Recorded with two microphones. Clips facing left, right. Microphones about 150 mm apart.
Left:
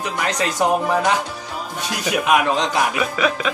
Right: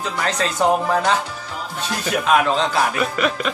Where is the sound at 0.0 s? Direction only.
15° left (ahead or behind).